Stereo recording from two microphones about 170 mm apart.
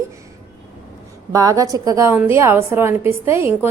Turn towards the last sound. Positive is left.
turn(degrees=-15)  # may be behind; listen again after turning